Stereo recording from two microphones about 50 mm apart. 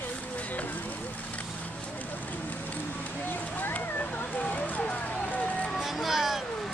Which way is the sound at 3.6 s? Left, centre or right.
Left.